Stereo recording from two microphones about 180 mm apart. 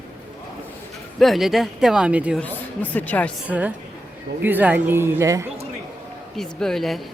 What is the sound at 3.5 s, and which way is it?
Speech, 10° right (ahead or behind).